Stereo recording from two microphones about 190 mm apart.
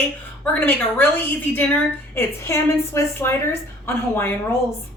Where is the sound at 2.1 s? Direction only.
15° left (ahead or behind).